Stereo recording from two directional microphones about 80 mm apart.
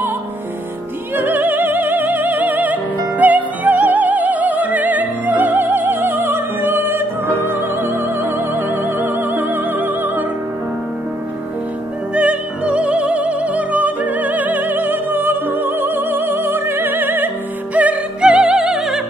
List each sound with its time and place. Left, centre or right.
1.1 s opera: right
3.2 s music: centre
7.4 s opera: right
12.1 s music: centre
17.7 s opera: centre
18.3 s music: centre